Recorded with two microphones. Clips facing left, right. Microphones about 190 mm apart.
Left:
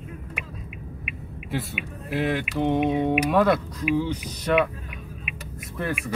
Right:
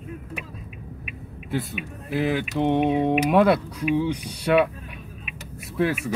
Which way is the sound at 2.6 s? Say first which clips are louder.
Right 1 dB; 30° right (ahead or behind).